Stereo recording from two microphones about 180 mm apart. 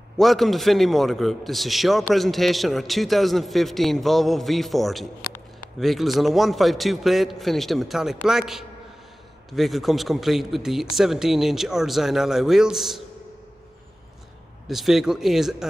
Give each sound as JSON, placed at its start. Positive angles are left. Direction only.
{"t": 0.2, "sound": "a man's voice", "side_deg": 0}
{"t": 14.7, "sound": "a man's voice", "side_deg": 0}